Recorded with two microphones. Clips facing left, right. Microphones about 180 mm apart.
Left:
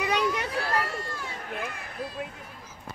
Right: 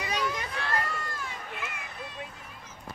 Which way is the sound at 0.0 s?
65° left (ahead or behind).